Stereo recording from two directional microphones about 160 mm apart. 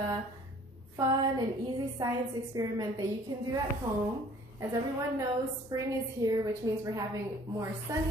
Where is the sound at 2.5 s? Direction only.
20° right (ahead or behind).